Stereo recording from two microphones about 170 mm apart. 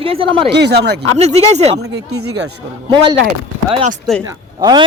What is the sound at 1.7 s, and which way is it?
Speech, 90° right.